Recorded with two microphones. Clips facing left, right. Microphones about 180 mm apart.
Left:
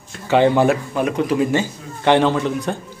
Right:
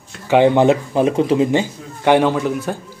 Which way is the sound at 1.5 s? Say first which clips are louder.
Right 2 dB; 15° right (ahead or behind).